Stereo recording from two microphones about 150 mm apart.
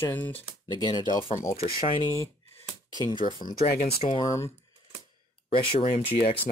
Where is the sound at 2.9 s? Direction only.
30° left (ahead or behind).